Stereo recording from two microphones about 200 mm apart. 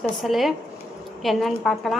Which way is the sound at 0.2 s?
Centre (ahead or behind).